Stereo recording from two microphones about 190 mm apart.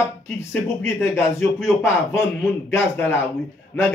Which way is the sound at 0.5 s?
10° left (ahead or behind).